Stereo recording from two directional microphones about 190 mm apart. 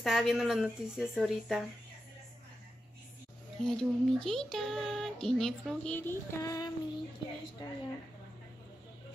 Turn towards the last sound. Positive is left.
turn(degrees=20)  # may be behind; listen again after turning